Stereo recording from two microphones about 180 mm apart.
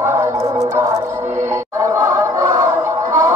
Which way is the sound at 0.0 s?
15° right (ahead or behind).